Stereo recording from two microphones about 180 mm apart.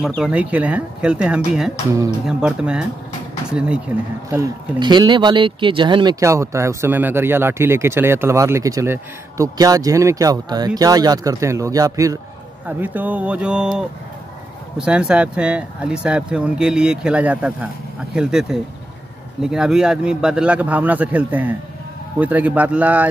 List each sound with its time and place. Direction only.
0.0 s speech: centre (ahead or behind)
4.3 s speech: 20° right (ahead or behind)